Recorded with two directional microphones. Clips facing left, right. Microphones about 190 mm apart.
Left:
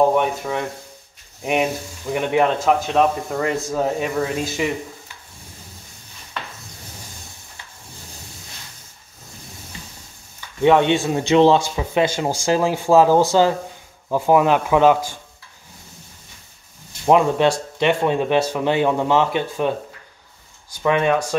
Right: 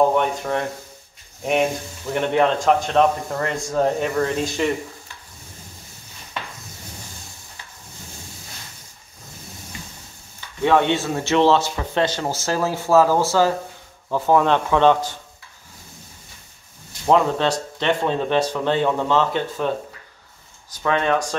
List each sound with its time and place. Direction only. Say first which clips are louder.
0.0 s speech: left 1 dB; 5° left (ahead or behind)
10.6 s speech: left 3 dB; 20° left (ahead or behind)
17.0 s speech: left 3 dB; 15° left (ahead or behind)
20.8 s speech: left 2 dB; 15° left (ahead or behind)